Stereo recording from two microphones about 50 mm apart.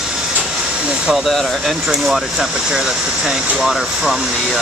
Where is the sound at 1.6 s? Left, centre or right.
Centre.